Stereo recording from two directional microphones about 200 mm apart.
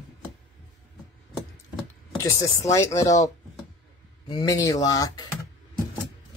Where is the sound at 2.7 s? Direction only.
15° left (ahead or behind).